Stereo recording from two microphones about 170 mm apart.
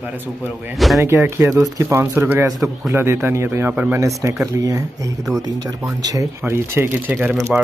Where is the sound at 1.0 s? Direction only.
15° right (ahead or behind).